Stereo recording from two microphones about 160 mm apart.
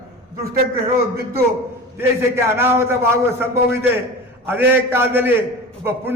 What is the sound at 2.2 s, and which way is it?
A man's voice, 15° right (ahead or behind).